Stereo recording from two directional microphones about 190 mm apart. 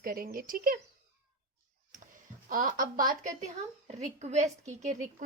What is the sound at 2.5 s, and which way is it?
A woman's voice, 45° right (ahead or behind).